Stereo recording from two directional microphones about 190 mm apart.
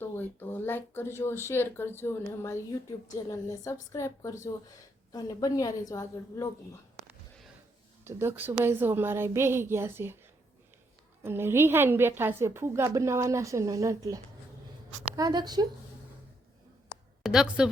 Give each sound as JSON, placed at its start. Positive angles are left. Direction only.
{"t": 0.0, "sound": "speech", "side_deg": 10}
{"t": 8.0, "sound": "a woman's voice", "side_deg": -10}
{"t": 11.2, "sound": "a woman's voice", "side_deg": -10}
{"t": 17.2, "sound": "a woman's voice", "side_deg": -5}